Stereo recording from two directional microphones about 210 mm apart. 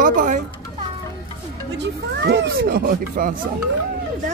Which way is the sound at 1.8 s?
55° right (ahead or behind).